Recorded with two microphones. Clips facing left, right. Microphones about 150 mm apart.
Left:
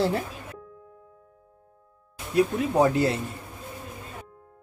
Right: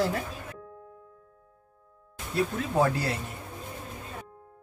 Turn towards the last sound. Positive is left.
turn(degrees=20)  # may be behind; listen again after turning